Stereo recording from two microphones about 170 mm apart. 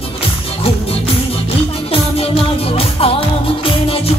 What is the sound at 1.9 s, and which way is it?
Music, 35° left (ahead or behind).